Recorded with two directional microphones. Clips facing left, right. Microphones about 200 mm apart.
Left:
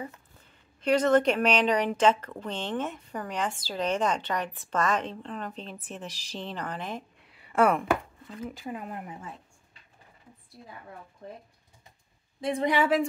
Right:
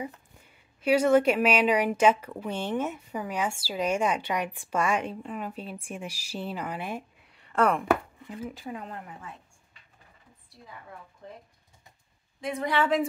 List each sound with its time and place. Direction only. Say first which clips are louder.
0.0 s speech: right 2 dB; 10° right (ahead or behind); by 7.8 s 5° left (ahead or behind)
8.3 s speech: even; 5° right (ahead or behind)
11.2 s a woman's voice: left 2 dB; 40° left (ahead or behind)
12.6 s speech: left 1 dB; 15° left (ahead or behind)